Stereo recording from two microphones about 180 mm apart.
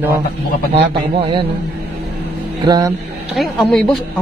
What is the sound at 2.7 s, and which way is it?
Speech, 20° right (ahead or behind).